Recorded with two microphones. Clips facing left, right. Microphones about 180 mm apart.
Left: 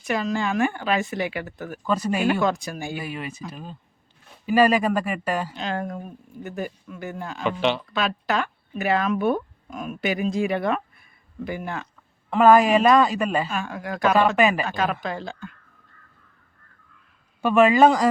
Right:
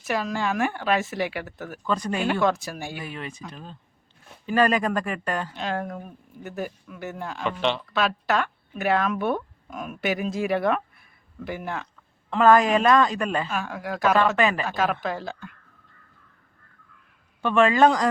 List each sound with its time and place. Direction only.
0.0 s speech: centre (ahead or behind)
14.3 s speech: 10° left (ahead or behind)
14.7 s speech: centre (ahead or behind)
17.4 s speech: 5° left (ahead or behind)